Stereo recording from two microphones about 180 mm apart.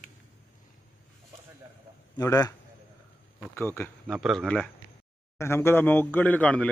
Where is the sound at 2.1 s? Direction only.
20° left (ahead or behind).